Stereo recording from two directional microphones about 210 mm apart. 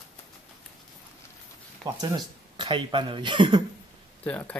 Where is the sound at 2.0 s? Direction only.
20° right (ahead or behind).